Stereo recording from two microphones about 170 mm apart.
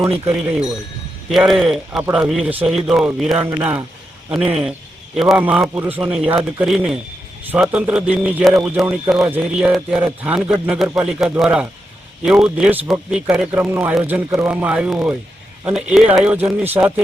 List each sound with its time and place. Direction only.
0.3 s a man's voice: 5° right (ahead or behind)